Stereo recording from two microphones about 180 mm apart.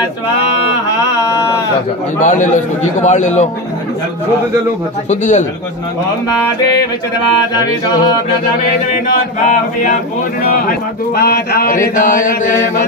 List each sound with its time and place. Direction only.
2.2 s a man's voice: 45° left (ahead or behind)
5.1 s chant: 40° left (ahead or behind)
11.1 s chant: 60° left (ahead or behind)